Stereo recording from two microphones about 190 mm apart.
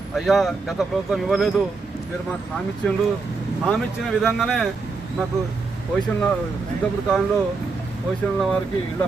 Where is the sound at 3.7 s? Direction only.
Centre (ahead or behind).